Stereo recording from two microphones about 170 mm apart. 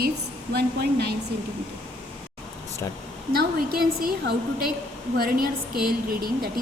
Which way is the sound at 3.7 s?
65° right (ahead or behind).